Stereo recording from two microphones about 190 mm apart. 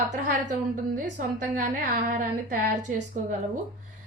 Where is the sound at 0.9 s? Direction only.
45° right (ahead or behind).